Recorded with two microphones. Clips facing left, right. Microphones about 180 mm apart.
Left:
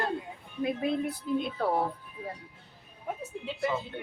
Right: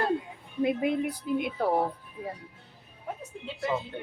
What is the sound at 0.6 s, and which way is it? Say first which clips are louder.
Speech: right 3 dB; 15° right (ahead or behind).